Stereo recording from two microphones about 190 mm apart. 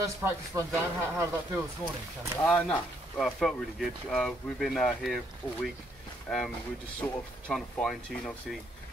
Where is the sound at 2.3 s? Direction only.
10° left (ahead or behind).